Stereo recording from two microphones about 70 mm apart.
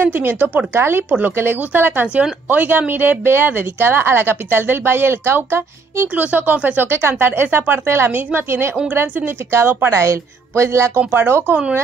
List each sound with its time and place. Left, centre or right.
0.0 s a woman's voice: right
6.9 s a woman's voice: right
11.0 s a woman's voice: right